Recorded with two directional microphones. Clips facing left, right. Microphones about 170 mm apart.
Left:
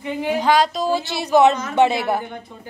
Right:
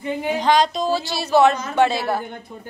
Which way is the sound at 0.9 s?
20° left (ahead or behind).